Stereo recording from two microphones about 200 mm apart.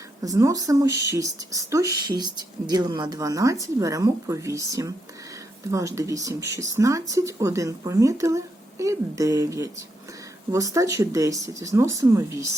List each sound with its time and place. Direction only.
0.2 s speech: 15° right (ahead or behind)